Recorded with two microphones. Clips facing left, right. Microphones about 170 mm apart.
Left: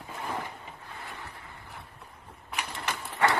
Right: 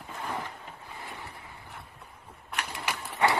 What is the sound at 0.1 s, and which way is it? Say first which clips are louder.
Boat: even; 5° left (ahead or behind).